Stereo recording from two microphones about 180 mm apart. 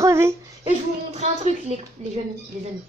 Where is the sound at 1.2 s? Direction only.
35° right (ahead or behind).